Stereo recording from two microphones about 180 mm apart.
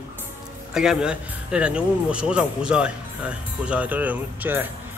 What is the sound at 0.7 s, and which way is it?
Speech, 5° right (ahead or behind).